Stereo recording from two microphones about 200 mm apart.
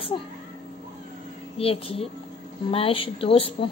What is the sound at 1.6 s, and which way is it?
A woman's voice, 30° left (ahead or behind).